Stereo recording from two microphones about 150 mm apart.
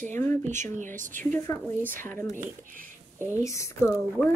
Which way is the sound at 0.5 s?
55° right (ahead or behind).